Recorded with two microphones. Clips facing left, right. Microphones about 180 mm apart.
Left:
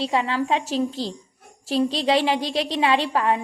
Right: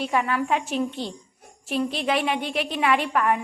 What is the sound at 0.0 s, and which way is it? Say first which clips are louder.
A woman's voice: left 1 dB; 30° left (ahead or behind).